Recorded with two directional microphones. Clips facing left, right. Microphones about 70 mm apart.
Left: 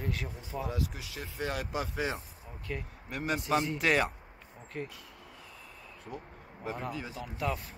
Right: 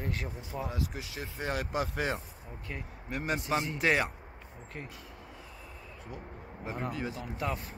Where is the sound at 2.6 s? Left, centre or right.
Centre.